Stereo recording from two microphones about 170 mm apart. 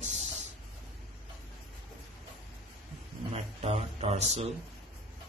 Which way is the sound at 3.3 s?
35° right (ahead or behind).